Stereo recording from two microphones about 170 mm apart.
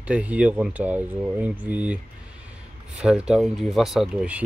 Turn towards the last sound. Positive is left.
turn(degrees=-5)  # may be behind; listen again after turning